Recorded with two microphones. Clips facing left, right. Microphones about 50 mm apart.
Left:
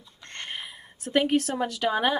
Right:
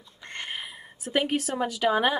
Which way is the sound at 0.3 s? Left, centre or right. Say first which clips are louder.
Right 1 dB; centre.